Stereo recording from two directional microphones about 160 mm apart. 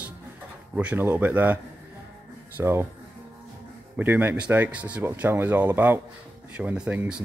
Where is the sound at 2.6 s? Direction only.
15° right (ahead or behind).